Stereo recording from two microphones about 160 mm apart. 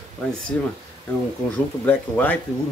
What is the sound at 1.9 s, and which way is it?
Speech, 10° left (ahead or behind).